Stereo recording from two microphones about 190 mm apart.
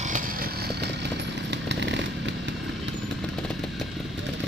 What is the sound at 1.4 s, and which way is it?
Chainsaw, 65° right (ahead or behind).